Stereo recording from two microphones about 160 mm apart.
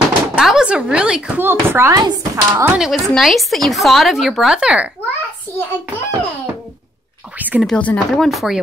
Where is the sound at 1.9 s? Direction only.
25° right (ahead or behind).